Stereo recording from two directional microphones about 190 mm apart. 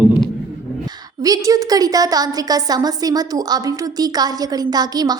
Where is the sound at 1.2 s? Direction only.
20° right (ahead or behind).